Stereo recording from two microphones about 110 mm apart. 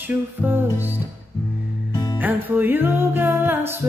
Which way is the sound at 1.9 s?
35° left (ahead or behind).